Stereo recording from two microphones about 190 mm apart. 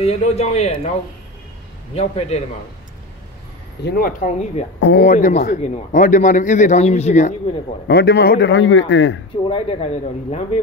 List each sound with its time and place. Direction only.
0.0 s a man's voice: 35° left (ahead or behind)
2.0 s a man's voice: 35° left (ahead or behind)
3.8 s a man's voice: 50° left (ahead or behind)
7.9 s a man's voice: 55° left (ahead or behind); by 9.2 s 70° left (ahead or behind)
9.5 s a man's voice: 30° left (ahead or behind)